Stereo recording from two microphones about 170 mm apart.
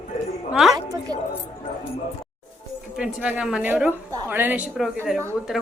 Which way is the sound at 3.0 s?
5° right (ahead or behind).